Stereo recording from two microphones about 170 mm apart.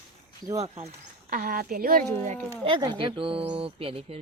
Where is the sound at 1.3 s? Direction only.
60° right (ahead or behind).